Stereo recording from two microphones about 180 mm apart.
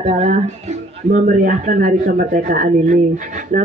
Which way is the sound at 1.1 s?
50° right (ahead or behind).